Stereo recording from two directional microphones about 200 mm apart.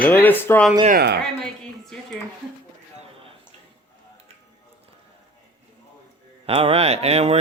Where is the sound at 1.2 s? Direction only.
5° left (ahead or behind).